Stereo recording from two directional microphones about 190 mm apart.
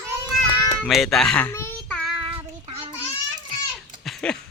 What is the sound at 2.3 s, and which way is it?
Child singing, 30° right (ahead or behind).